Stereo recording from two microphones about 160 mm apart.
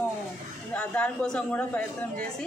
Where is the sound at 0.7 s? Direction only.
10° left (ahead or behind).